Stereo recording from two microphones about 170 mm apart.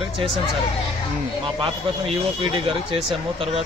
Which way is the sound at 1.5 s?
30° right (ahead or behind).